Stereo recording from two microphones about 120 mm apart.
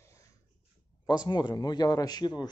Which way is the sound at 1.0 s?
35° left (ahead or behind).